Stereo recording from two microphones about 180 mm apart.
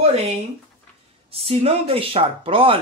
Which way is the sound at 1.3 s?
35° right (ahead or behind).